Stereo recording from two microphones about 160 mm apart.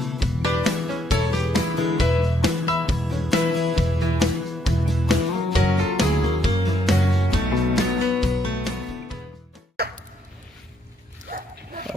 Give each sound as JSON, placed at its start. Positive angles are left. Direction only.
{"t": 0.0, "sound": "music", "side_deg": 0}
{"t": 9.8, "sound": "music", "side_deg": -85}
{"t": 11.2, "sound": "a sound", "side_deg": -60}